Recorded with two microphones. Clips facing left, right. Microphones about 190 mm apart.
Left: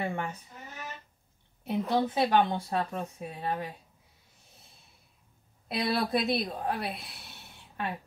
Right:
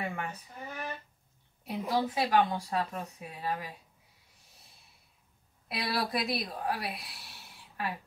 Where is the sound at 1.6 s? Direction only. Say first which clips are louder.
Left 3 dB; centre (ahead or behind).